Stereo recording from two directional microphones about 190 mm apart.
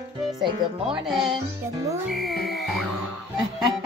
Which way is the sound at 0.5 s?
25° right (ahead or behind).